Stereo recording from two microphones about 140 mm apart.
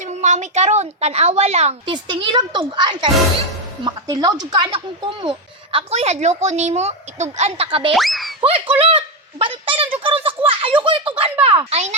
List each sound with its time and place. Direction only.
0.0 s a woman's voice: 60° right (ahead or behind)
1.9 s speech: 35° right (ahead or behind)
7.9 s speech: centre (ahead or behind)
8.4 s a child's voice: 40° right (ahead or behind)